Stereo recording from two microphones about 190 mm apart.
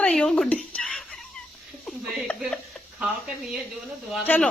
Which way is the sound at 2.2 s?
Centre (ahead or behind).